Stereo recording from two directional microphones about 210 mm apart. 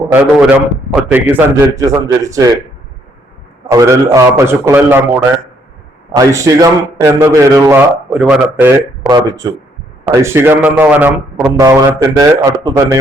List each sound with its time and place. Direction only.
0.1 s a man's voice: 10° right (ahead or behind)
3.7 s a man's voice: 15° right (ahead or behind)